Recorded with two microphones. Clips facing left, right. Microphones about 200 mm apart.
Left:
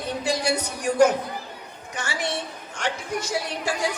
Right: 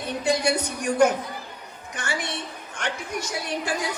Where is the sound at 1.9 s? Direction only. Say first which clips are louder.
Left 1 dB; 55° right (ahead or behind).